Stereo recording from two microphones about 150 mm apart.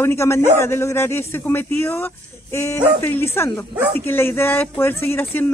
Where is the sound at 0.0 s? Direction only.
15° left (ahead or behind).